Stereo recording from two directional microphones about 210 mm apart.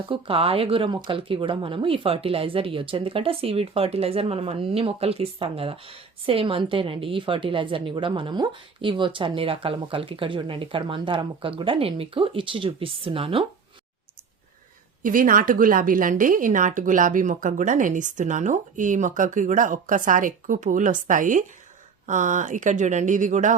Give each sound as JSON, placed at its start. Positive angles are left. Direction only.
{"t": 0.0, "sound": "speech", "side_deg": -25}
{"t": 15.0, "sound": "a woman's voice", "side_deg": -40}